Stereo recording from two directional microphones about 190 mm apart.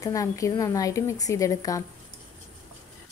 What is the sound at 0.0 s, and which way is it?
A woman's voice, 15° left (ahead or behind).